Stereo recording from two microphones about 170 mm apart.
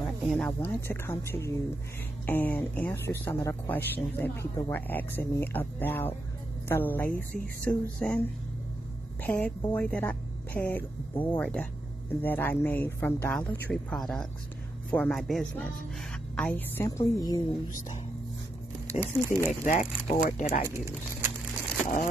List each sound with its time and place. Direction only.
0.0 s speech: 5° left (ahead or behind)
9.2 s speech: 5° left (ahead or behind)
18.9 s speech: 15° right (ahead or behind)
19.6 s speech: 45° left (ahead or behind)
20.6 s speech: 15° right (ahead or behind)